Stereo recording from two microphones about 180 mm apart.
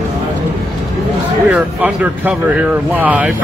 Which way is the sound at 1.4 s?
10° right (ahead or behind).